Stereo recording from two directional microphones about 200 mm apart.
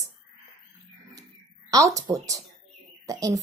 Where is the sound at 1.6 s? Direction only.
15° right (ahead or behind).